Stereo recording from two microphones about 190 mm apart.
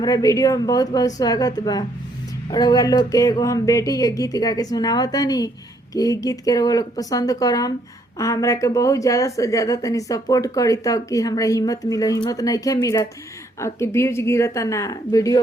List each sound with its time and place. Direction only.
0.0 s speech: 20° left (ahead or behind)